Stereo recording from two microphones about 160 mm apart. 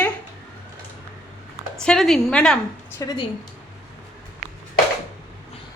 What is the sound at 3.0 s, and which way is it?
Speech, 25° left (ahead or behind).